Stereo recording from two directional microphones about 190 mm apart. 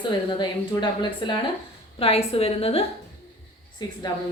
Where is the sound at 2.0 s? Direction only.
30° left (ahead or behind).